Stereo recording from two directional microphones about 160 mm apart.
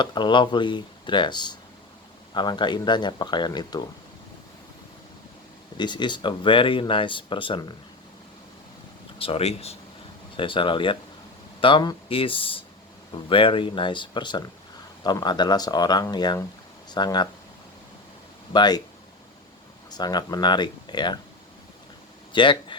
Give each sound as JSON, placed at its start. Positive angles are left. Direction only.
{"t": 0.0, "sound": "speech", "side_deg": 30}
{"t": 5.7, "sound": "speech", "side_deg": 30}
{"t": 9.1, "sound": "speech", "side_deg": 35}
{"t": 18.5, "sound": "speech", "side_deg": 25}
{"t": 19.9, "sound": "speech", "side_deg": 25}
{"t": 22.3, "sound": "speech", "side_deg": 30}